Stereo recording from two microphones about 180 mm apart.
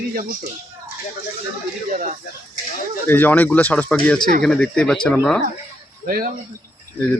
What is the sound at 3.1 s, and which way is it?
A man's voice, 10° left (ahead or behind).